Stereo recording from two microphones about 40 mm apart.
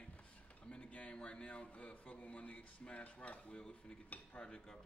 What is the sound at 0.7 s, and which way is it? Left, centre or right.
Speech, left.